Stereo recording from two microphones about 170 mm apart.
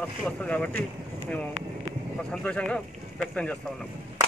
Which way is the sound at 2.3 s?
5° left (ahead or behind).